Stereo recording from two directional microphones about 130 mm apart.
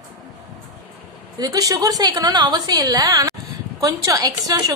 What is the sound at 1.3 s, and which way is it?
A woman's voice, 30° right (ahead or behind).